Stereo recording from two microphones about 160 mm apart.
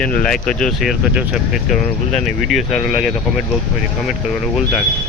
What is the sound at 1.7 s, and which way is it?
Speech, 45° left (ahead or behind).